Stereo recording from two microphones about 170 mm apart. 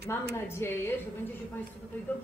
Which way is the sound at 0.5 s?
15° left (ahead or behind).